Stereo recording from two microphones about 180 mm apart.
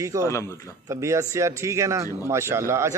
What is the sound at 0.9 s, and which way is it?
Speech, 15° right (ahead or behind).